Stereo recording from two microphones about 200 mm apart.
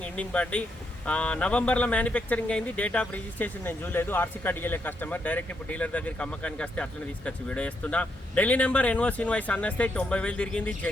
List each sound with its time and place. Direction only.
0.2 s speech: 5° left (ahead or behind)